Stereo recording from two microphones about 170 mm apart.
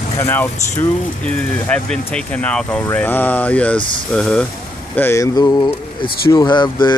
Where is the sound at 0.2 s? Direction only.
10° left (ahead or behind).